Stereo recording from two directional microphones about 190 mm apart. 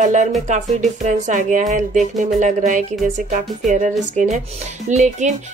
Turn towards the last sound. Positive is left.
turn(degrees=-40)  # may be behind; listen again after turning